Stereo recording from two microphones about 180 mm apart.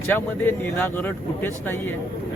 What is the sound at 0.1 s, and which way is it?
A man's voice, 10° left (ahead or behind).